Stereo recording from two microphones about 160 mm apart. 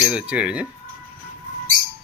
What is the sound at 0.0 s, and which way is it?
Speech, 5° right (ahead or behind).